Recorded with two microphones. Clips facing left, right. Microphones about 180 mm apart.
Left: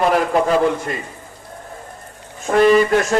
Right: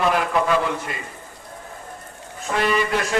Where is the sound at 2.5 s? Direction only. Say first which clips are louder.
Left 9 dB; 40° left (ahead or behind).